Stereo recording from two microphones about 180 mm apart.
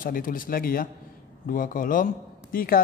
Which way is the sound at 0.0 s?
50° left (ahead or behind).